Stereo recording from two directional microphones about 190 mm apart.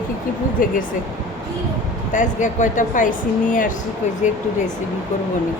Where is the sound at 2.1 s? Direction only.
40° left (ahead or behind).